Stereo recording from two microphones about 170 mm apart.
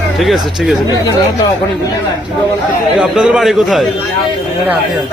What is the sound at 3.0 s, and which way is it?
Speech, 5° right (ahead or behind).